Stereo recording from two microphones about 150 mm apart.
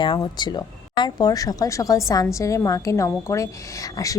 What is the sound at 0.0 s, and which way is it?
Speech, 30° left (ahead or behind).